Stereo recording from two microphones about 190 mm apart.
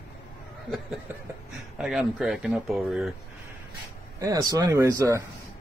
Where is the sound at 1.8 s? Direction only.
Centre (ahead or behind).